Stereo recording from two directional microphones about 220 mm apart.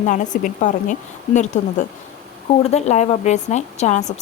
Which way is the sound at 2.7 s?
30° left (ahead or behind).